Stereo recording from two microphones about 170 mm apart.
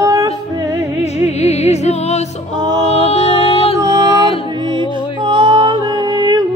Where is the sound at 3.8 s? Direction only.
20° right (ahead or behind).